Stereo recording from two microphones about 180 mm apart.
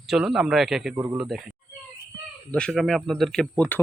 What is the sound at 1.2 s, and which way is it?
Speech, centre (ahead or behind).